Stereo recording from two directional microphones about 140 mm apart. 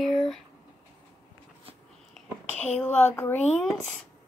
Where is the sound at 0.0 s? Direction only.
5° left (ahead or behind).